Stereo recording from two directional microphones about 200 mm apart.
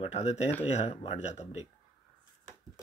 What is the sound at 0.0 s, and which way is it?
Speech, 35° left (ahead or behind).